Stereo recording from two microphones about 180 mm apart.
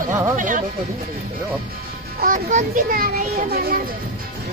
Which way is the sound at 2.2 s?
45° right (ahead or behind).